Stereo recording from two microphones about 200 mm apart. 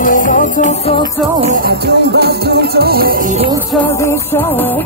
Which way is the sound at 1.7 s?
55° right (ahead or behind).